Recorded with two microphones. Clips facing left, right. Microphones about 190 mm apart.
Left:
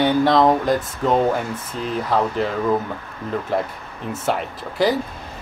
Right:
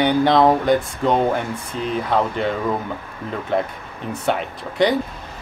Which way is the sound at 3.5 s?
5° left (ahead or behind).